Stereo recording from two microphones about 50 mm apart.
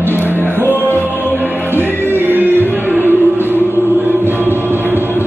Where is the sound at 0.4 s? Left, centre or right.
Right.